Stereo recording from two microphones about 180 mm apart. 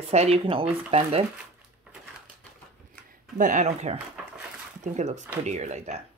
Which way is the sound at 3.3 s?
45° right (ahead or behind).